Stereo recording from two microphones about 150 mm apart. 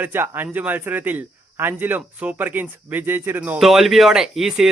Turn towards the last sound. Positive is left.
turn(degrees=-5)  # may be behind; listen again after turning